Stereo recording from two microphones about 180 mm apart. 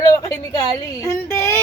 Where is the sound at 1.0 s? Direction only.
15° left (ahead or behind).